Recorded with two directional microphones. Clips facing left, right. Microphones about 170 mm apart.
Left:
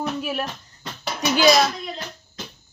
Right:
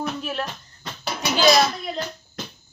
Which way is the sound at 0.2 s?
5° left (ahead or behind).